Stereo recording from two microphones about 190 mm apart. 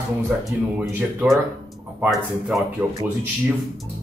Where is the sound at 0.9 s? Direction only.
10° right (ahead or behind).